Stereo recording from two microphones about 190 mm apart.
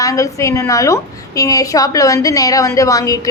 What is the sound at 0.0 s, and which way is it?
A woman's voice, 15° left (ahead or behind).